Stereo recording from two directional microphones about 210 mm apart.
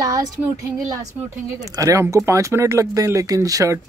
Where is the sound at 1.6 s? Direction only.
15° right (ahead or behind).